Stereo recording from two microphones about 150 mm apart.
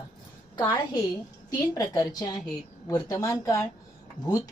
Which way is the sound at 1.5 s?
25° left (ahead or behind).